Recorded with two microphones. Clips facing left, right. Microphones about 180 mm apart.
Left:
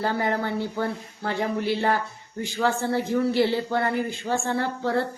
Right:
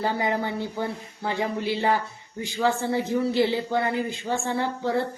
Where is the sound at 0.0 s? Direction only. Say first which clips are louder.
Even; 15° right (ahead or behind).